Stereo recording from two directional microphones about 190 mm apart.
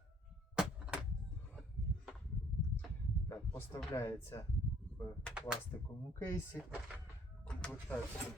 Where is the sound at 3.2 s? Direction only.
15° left (ahead or behind).